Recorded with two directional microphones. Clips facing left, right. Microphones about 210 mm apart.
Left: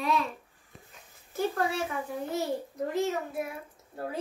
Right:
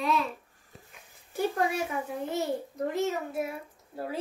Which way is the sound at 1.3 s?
15° right (ahead or behind).